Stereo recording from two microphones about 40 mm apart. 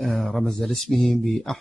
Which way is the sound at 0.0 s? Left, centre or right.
Centre.